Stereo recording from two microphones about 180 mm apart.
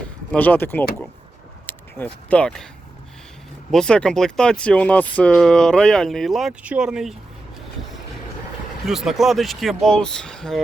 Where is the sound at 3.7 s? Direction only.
5° left (ahead or behind).